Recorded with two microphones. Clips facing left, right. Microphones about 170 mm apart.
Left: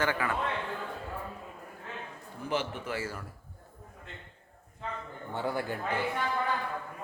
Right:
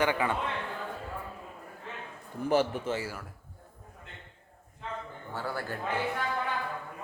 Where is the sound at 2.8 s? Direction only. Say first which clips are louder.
Right 3 dB; 20° right (ahead or behind).